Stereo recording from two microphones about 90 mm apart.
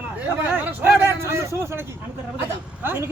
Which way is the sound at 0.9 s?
30° right (ahead or behind).